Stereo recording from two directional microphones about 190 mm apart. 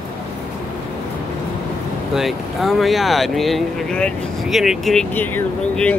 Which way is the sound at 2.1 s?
Centre (ahead or behind).